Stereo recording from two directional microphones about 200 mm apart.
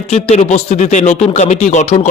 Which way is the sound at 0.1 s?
35° left (ahead or behind).